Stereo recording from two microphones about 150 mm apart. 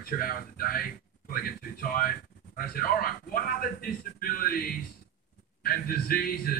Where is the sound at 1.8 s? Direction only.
75° left (ahead or behind).